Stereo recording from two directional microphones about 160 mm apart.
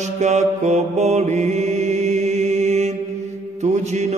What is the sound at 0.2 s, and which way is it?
Mantra, 45° right (ahead or behind).